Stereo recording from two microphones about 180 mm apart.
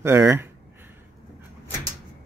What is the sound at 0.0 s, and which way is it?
Speech, 15° right (ahead or behind).